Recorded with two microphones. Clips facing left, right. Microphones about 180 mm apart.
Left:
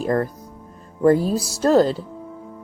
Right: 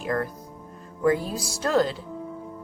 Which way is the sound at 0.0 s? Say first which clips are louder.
Left 6 dB; 35° left (ahead or behind).